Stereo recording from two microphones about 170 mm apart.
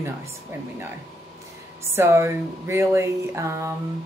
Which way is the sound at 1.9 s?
15° right (ahead or behind).